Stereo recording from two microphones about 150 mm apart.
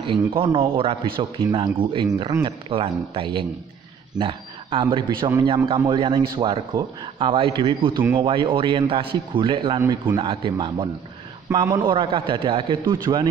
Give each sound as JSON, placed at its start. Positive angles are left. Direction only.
{"t": 0.0, "sound": "a man's voice", "side_deg": -35}
{"t": 9.8, "sound": "a man's voice", "side_deg": -15}
{"t": 10.1, "sound": "a man's voice", "side_deg": -35}
{"t": 11.5, "sound": "a man's voice", "side_deg": -20}
{"t": 11.8, "sound": "a man's voice", "side_deg": -30}